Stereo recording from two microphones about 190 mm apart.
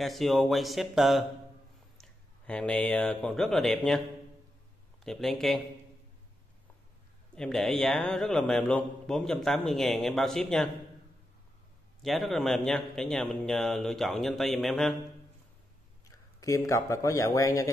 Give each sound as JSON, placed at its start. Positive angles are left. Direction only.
{"t": 0.0, "sound": "speech", "side_deg": 0}
{"t": 5.0, "sound": "speech", "side_deg": 0}
{"t": 7.3, "sound": "speech", "side_deg": 0}
{"t": 12.0, "sound": "speech", "side_deg": 0}
{"t": 16.1, "sound": "speech", "side_deg": 15}